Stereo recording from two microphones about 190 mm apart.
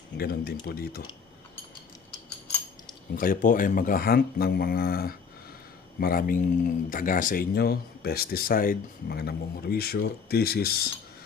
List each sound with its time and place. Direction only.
0.2 s speech: 55° left (ahead or behind)
3.2 s speech: 45° left (ahead or behind)